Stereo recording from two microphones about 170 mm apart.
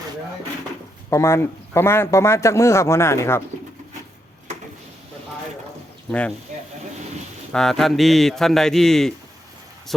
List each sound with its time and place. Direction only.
1.1 s speech: 15° left (ahead or behind)
6.1 s speech: 5° left (ahead or behind)
7.5 s a man's voice: centre (ahead or behind)